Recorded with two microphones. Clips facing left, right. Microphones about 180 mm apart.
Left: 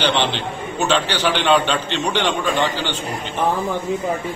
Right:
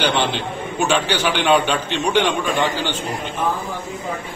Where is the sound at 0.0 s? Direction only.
10° right (ahead or behind).